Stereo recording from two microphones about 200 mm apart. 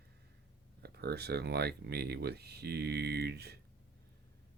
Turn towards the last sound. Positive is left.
turn(degrees=-55)  # may be behind; listen again after turning